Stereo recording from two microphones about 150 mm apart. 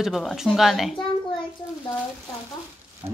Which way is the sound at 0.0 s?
Centre (ahead or behind).